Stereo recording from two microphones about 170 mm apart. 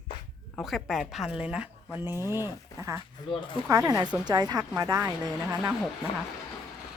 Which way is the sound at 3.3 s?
30° left (ahead or behind).